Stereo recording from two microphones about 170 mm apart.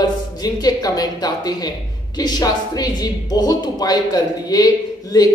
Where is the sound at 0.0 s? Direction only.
25° left (ahead or behind).